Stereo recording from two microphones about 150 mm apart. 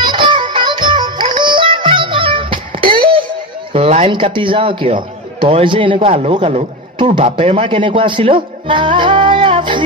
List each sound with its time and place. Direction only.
0.0 s music: 30° right (ahead or behind)
3.7 s a sound: 45° right (ahead or behind)
4.1 s a man's voice: 35° right (ahead or behind)